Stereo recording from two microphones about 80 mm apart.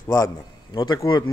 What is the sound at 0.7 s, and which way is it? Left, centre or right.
Speech, left.